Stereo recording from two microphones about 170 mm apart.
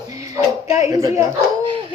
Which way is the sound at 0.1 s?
20° right (ahead or behind).